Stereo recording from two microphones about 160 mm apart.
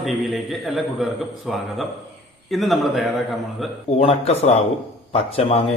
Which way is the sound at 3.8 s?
40° left (ahead or behind).